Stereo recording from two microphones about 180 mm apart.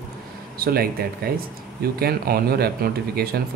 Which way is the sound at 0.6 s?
55° right (ahead or behind).